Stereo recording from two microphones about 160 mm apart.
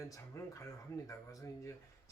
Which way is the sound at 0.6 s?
20° left (ahead or behind).